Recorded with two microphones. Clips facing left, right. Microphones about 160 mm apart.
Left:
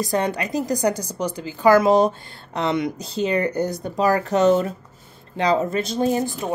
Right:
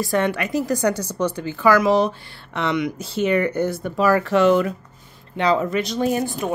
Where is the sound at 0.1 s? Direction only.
30° left (ahead or behind).